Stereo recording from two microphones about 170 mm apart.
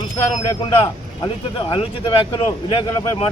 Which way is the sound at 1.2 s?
30° left (ahead or behind).